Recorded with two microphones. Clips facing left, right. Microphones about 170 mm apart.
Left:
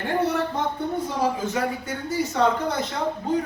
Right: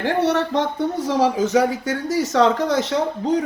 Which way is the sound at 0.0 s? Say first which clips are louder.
Right 4 dB; 80° right.